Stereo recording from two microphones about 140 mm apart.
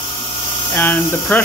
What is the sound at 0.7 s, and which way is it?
Speech, 10° left (ahead or behind).